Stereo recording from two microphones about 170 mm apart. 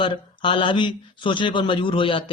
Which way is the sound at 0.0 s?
30° left (ahead or behind).